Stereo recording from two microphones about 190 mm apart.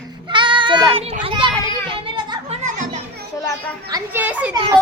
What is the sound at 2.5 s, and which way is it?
Music, 35° right (ahead or behind).